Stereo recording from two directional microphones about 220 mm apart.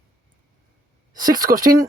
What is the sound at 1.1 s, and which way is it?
Speech, 40° right (ahead or behind).